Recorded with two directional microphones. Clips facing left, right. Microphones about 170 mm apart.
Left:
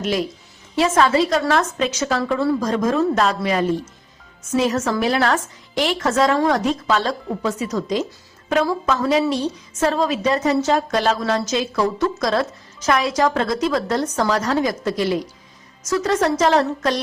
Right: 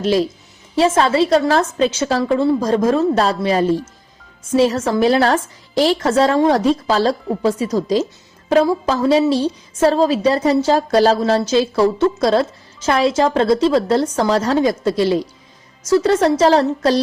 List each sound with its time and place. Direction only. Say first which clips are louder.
0.0 s a woman's voice: right 6 dB; 30° right (ahead or behind)